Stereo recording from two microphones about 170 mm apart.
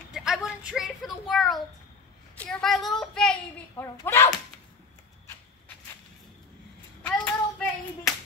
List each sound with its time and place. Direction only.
0.1 s a sound: 5° right (ahead or behind)
2.3 s speech: 5° left (ahead or behind)
3.7 s speech: 15° left (ahead or behind)
7.0 s child singing: 5° left (ahead or behind)